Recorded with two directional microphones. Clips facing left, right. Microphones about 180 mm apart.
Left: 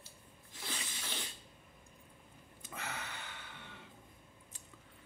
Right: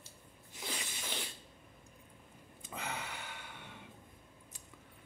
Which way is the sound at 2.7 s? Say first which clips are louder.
Right 3 dB; 15° right (ahead or behind).